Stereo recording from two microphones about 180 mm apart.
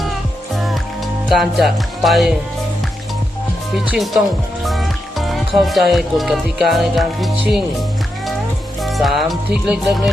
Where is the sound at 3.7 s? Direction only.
Centre (ahead or behind).